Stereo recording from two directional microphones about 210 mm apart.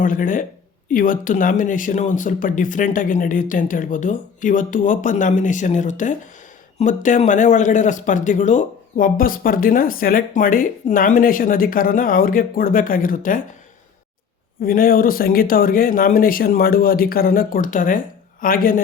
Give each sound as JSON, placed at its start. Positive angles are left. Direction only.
{"t": 0.0, "sound": "speech", "side_deg": 40}
{"t": 14.6, "sound": "speech", "side_deg": 45}